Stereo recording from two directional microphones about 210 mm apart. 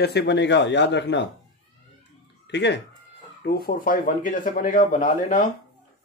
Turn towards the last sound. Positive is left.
turn(degrees=35)  # may be behind; listen again after turning